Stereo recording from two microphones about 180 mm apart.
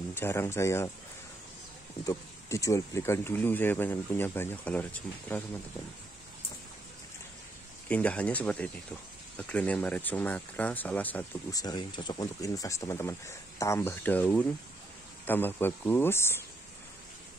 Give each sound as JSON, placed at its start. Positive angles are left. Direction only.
{"t": 0.1, "sound": "speech", "side_deg": 15}
{"t": 2.0, "sound": "speech", "side_deg": 15}
{"t": 7.9, "sound": "speech", "side_deg": 5}
{"t": 11.5, "sound": "speech", "side_deg": 20}